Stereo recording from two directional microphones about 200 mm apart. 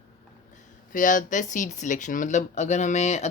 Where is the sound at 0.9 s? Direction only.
40° left (ahead or behind).